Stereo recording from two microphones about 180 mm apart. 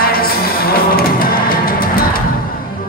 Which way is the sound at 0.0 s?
55° left (ahead or behind).